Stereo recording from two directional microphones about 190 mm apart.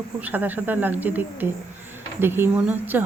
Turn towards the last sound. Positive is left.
turn(degrees=-10)  # may be behind; listen again after turning